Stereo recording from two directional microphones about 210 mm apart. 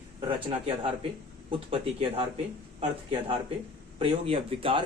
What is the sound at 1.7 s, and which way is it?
Speech, 25° right (ahead or behind).